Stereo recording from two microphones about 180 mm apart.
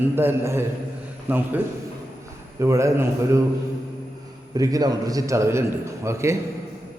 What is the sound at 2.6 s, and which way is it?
Speech, 15° right (ahead or behind).